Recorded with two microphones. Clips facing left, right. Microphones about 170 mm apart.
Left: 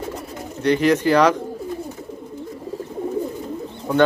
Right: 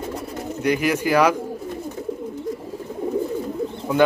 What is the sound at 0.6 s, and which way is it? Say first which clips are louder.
Speech: left 4 dB; 10° right (ahead or behind).